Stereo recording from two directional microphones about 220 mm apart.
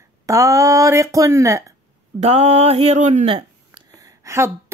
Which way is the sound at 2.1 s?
30° right (ahead or behind).